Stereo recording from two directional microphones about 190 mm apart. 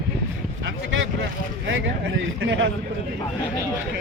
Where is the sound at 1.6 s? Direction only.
65° right (ahead or behind).